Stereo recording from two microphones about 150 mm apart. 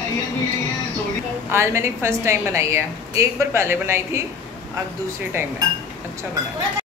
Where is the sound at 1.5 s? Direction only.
15° right (ahead or behind).